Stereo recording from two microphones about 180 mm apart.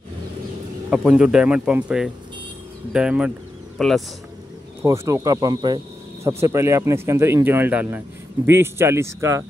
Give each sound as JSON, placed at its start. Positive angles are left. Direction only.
{"t": 0.8, "sound": "speech", "side_deg": -5}
{"t": 4.8, "sound": "speech", "side_deg": -15}